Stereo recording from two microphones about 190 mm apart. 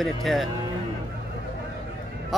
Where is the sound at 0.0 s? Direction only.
Centre (ahead or behind).